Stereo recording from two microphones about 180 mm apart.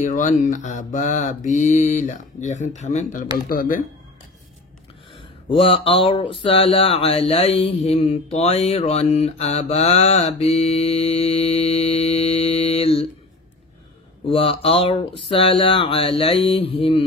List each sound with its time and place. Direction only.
0.0 s mantra: 45° left (ahead or behind)
5.1 s speech: 30° left (ahead or behind)
14.2 s speech: 30° left (ahead or behind)